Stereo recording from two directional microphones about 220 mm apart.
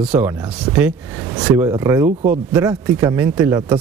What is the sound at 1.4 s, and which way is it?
Speech, 15° right (ahead or behind).